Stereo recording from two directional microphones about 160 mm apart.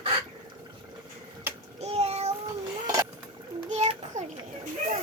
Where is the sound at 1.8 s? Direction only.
40° right (ahead or behind).